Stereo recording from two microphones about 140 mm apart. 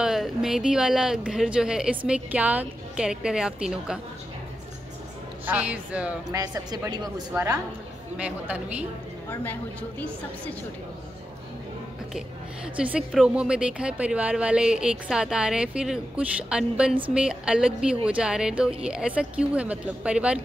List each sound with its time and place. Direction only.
0.0 s a woman's voice: 5° right (ahead or behind)
5.4 s speech: 10° right (ahead or behind)
6.3 s speech: 25° right (ahead or behind)
8.2 s speech: 10° right (ahead or behind)
9.3 s a woman's voice: 10° left (ahead or behind)
12.8 s speech: 5° right (ahead or behind)